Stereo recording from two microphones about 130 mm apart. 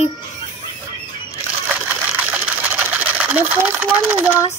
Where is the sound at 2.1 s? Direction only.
15° right (ahead or behind).